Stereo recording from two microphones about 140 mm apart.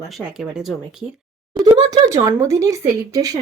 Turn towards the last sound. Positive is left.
turn(degrees=-25)  # may be behind; listen again after turning